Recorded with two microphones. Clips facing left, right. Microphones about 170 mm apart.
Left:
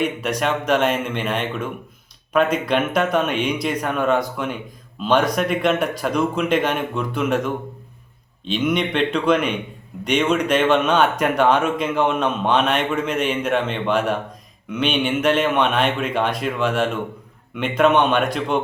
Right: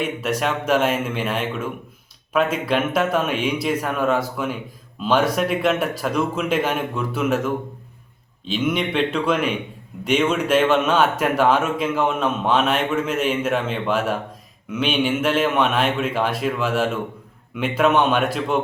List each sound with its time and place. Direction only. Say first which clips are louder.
0.0 s speech: left 1 dB; 5° right (ahead or behind)